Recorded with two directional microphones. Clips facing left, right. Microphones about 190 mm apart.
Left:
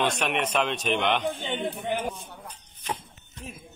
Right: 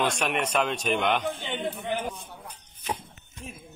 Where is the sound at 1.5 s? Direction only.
30° left (ahead or behind).